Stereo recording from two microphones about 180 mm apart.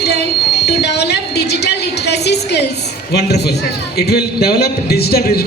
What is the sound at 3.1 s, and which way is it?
A man's voice, 65° left (ahead or behind).